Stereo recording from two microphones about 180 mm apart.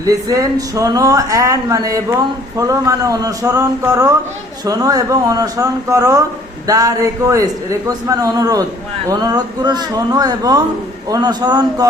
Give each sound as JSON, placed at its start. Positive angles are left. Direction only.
{"t": 0.0, "sound": "speech", "side_deg": -20}